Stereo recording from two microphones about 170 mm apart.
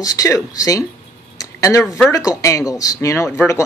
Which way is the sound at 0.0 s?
20° left (ahead or behind).